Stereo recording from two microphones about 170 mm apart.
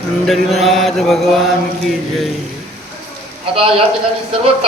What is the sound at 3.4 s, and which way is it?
Speech, 35° right (ahead or behind).